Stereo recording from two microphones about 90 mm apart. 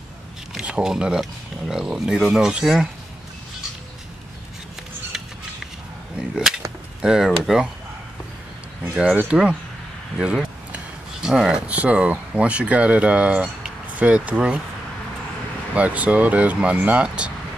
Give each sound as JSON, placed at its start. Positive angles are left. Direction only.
{"t": 0.6, "sound": "speech", "side_deg": -10}
{"t": 6.1, "sound": "speech", "side_deg": -10}
{"t": 8.8, "sound": "speech", "side_deg": -20}
{"t": 15.7, "sound": "speech", "side_deg": -15}